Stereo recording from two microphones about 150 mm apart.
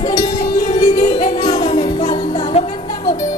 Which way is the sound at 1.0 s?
45° left (ahead or behind).